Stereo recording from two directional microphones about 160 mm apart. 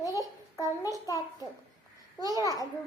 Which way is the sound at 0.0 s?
20° left (ahead or behind).